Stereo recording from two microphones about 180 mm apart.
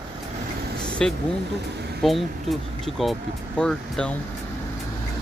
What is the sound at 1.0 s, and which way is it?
Speech, 5° left (ahead or behind).